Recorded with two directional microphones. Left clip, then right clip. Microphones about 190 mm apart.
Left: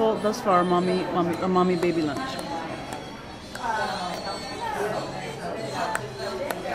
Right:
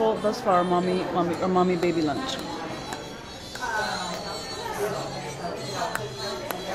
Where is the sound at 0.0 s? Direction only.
10° left (ahead or behind).